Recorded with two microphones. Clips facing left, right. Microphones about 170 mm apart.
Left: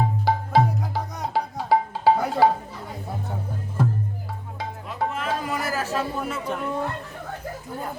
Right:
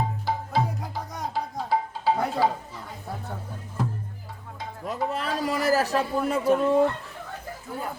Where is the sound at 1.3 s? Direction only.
70° left (ahead or behind).